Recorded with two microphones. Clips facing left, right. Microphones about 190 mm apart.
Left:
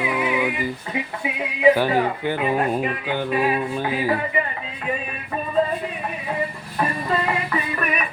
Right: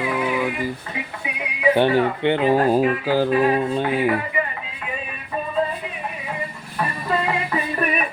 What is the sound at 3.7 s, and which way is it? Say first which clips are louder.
Speech: right 3 dB; 25° right (ahead or behind).